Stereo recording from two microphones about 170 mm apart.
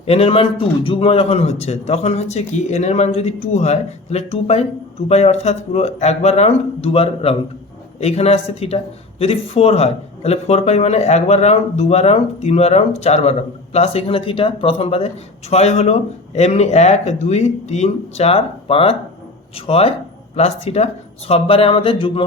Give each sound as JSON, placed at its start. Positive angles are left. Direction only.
{"t": 0.0, "sound": "speech", "side_deg": 35}